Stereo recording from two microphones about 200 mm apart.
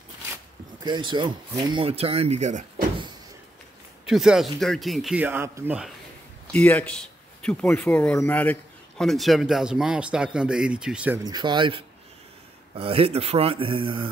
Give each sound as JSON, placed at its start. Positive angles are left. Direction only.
{"t": 0.8, "sound": "speech", "side_deg": -25}
{"t": 4.0, "sound": "a man's voice", "side_deg": -5}
{"t": 6.5, "sound": "a man's voice", "side_deg": 10}
{"t": 11.2, "sound": "speech", "side_deg": -20}